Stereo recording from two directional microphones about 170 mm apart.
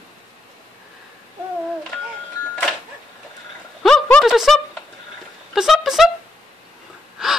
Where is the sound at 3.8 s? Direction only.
Centre (ahead or behind).